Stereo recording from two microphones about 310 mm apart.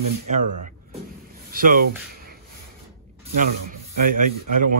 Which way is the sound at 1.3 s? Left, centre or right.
Right.